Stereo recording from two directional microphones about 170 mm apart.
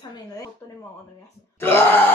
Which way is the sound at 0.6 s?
20° left (ahead or behind).